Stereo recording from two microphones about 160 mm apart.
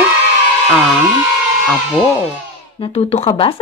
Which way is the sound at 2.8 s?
35° left (ahead or behind).